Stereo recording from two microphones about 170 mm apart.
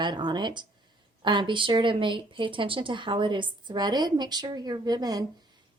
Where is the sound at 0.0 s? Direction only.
25° right (ahead or behind).